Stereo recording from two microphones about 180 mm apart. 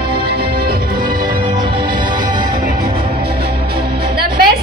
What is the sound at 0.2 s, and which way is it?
Music, 60° right (ahead or behind).